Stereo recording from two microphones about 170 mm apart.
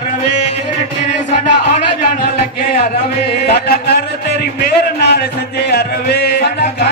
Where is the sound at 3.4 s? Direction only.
65° left (ahead or behind).